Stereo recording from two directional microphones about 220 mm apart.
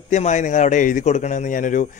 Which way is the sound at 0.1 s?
35° left (ahead or behind).